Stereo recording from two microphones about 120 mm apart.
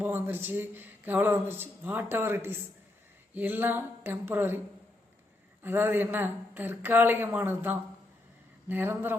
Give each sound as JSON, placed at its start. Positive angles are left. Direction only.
{"t": 0.0, "sound": "speech", "side_deg": -15}
{"t": 5.6, "sound": "speech", "side_deg": -15}